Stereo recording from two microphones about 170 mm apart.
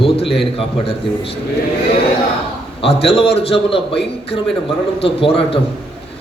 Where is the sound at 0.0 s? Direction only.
35° left (ahead or behind).